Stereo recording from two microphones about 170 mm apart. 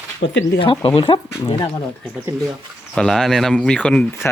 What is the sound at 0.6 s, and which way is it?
Speech, 30° left (ahead or behind).